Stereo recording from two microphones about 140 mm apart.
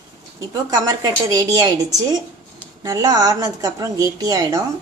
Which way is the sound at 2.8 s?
25° right (ahead or behind).